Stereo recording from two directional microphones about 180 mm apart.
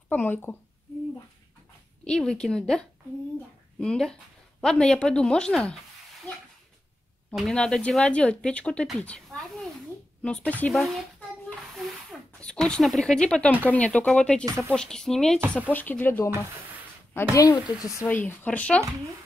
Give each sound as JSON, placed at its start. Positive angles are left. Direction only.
{"t": 0.1, "sound": "speech", "side_deg": 10}
{"t": 2.0, "sound": "speech", "side_deg": 5}
{"t": 3.8, "sound": "speech", "side_deg": 5}
{"t": 7.3, "sound": "speech", "side_deg": 5}